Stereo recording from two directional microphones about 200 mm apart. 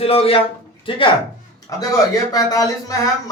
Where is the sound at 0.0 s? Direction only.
30° left (ahead or behind).